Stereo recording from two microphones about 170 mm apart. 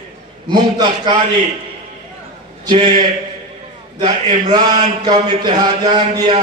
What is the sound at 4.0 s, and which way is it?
A man's voice, 30° right (ahead or behind).